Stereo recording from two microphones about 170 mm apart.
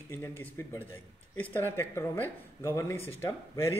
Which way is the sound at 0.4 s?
10° left (ahead or behind).